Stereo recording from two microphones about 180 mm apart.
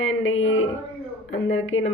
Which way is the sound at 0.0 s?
90° left.